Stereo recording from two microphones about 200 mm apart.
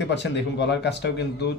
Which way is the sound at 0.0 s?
60° left (ahead or behind).